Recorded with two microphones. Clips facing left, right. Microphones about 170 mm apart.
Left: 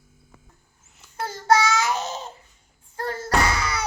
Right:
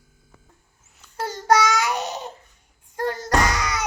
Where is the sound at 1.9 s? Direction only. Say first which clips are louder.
Even; 15° right (ahead or behind).